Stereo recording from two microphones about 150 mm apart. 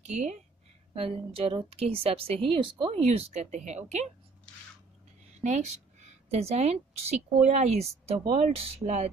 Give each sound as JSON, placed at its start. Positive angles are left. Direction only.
{"t": 0.1, "sound": "speech", "side_deg": -50}
{"t": 0.9, "sound": "a woman's voice", "side_deg": -40}
{"t": 4.5, "sound": "a sound", "side_deg": 5}
{"t": 5.4, "sound": "a woman's voice", "side_deg": -50}